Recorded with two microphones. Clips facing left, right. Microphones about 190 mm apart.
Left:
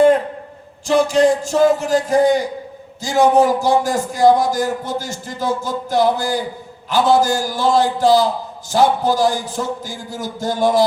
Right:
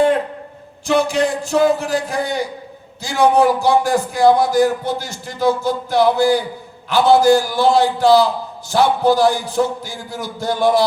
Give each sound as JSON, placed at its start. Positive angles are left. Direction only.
{"t": 0.9, "sound": "a man's voice", "side_deg": 45}